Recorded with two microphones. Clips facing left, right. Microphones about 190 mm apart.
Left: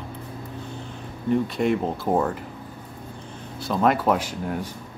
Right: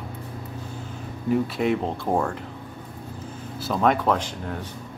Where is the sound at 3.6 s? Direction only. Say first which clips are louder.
Left 1 dB; centre (ahead or behind).